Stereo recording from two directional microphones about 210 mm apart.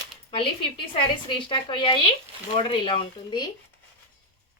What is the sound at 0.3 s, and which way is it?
A woman's voice, 25° left (ahead or behind).